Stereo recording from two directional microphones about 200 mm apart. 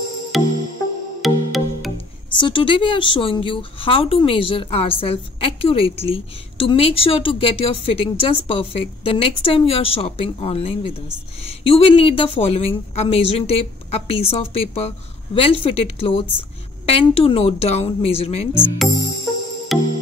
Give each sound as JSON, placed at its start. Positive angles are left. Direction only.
{"t": 0.3, "sound": "music", "side_deg": 0}
{"t": 2.3, "sound": "a woman's voice", "side_deg": 25}
{"t": 19.7, "sound": "music", "side_deg": 0}